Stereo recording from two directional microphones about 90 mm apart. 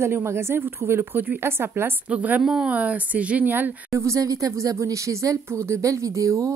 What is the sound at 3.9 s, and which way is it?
Speech, 35° right (ahead or behind).